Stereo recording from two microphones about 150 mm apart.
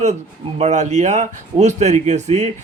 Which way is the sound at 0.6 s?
50° right (ahead or behind).